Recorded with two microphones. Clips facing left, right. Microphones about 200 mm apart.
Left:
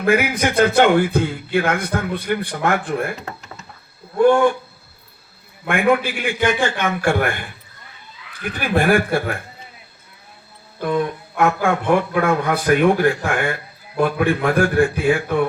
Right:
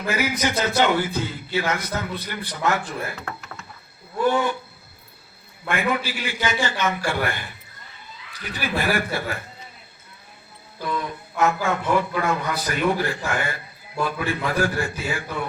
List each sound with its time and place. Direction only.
0.0 s a man's voice: 55° left (ahead or behind)
3.2 s a sound: 15° left (ahead or behind)
4.2 s a man's voice: 50° left (ahead or behind)
5.6 s a man's voice: 55° left (ahead or behind)
8.4 s a man's voice: 55° left (ahead or behind)
10.8 s a man's voice: 55° left (ahead or behind)